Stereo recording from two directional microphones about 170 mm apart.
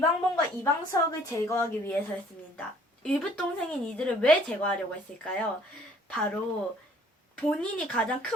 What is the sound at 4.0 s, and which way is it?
Speech, 5° left (ahead or behind).